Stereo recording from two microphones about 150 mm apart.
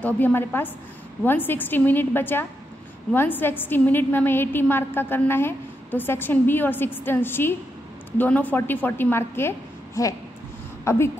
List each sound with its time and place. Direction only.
0.0 s a woman's voice: 15° left (ahead or behind)